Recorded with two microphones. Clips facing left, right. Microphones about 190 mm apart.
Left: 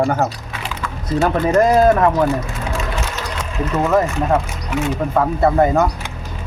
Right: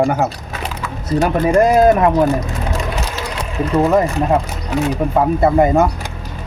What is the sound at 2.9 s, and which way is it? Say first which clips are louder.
Ratchet: right 2 dB; 35° right (ahead or behind).